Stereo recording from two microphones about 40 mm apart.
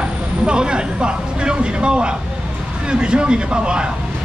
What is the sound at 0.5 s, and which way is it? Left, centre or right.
Speech, right.